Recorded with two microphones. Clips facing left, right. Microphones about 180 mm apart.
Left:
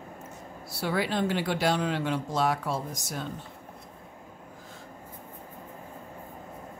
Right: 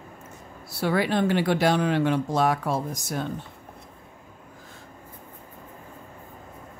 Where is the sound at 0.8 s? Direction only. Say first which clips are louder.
Right 5 dB; 60° right (ahead or behind).